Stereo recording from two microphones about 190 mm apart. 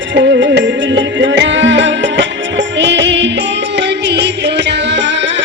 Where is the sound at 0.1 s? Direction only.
70° right (ahead or behind).